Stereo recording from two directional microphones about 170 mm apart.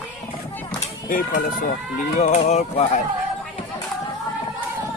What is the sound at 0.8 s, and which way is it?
Speech, 55° left (ahead or behind).